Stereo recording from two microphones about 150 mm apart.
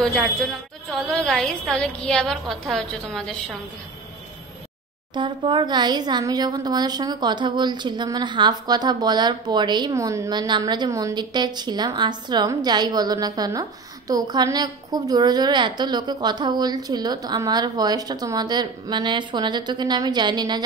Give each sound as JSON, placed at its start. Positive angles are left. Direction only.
{"t": 0.0, "sound": "a woman's voice", "side_deg": 5}
{"t": 5.1, "sound": "speech", "side_deg": -30}